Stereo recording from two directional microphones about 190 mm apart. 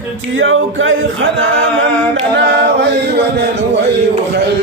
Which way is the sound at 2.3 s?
65° right (ahead or behind).